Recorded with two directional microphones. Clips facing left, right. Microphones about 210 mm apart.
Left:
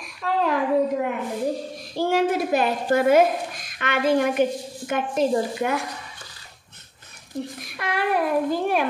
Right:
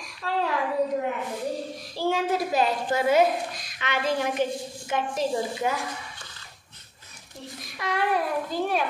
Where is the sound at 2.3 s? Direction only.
55° left (ahead or behind).